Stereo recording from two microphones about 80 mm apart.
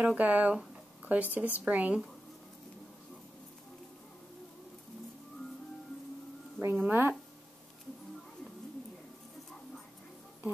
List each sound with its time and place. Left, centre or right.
0.0 s speech: centre
6.6 s a woman's voice: right